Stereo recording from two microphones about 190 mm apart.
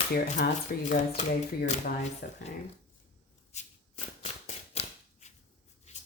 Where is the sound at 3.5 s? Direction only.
35° left (ahead or behind).